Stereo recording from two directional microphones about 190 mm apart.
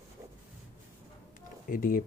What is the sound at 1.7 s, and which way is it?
Speech, 50° left (ahead or behind).